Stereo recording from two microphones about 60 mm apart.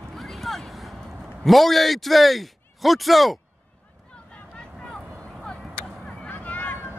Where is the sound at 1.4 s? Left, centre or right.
Centre.